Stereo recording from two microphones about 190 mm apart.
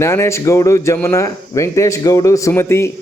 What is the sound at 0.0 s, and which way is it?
A man's voice, 15° left (ahead or behind).